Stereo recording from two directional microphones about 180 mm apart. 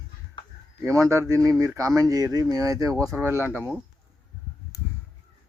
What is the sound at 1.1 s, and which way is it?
Speech, 15° right (ahead or behind).